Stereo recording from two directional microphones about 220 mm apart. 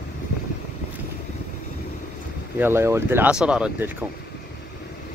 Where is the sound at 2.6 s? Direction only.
10° right (ahead or behind).